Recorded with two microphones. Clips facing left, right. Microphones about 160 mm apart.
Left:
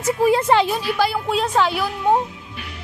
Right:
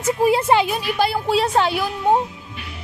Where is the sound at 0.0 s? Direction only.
20° right (ahead or behind).